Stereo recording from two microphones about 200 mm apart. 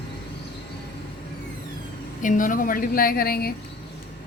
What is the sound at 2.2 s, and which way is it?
Speech, 40° left (ahead or behind).